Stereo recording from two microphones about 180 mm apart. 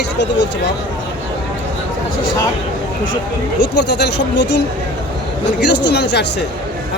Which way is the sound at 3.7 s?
70° left (ahead or behind).